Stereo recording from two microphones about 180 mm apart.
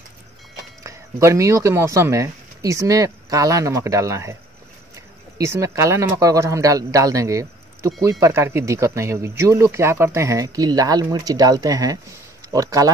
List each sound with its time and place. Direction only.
0.8 s speech: 15° right (ahead or behind)